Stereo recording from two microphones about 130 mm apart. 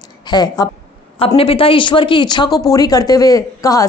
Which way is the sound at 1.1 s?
45° left (ahead or behind).